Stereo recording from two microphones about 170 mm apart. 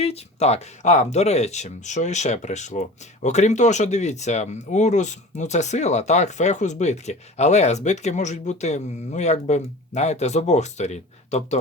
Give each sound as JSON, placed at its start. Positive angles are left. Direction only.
{"t": 0.0, "sound": "speech", "side_deg": 40}